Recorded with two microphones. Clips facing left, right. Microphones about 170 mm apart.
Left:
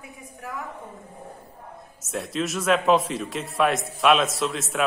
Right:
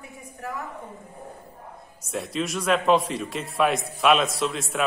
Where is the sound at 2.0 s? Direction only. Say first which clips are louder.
Left 1 dB; centre (ahead or behind).